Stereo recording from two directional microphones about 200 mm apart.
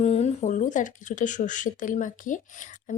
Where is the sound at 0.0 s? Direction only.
35° left (ahead or behind).